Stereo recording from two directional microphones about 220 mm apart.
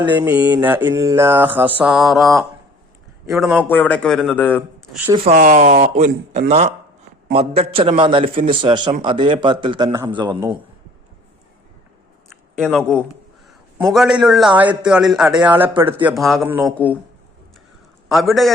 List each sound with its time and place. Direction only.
0.3 s mantra: 5° right (ahead or behind)
3.2 s a man's voice: centre (ahead or behind)
5.1 s a man's voice: 30° right (ahead or behind)
12.3 s a man's voice: centre (ahead or behind)
15.4 s mantra: 10° right (ahead or behind)
18.1 s a man's voice: centre (ahead or behind)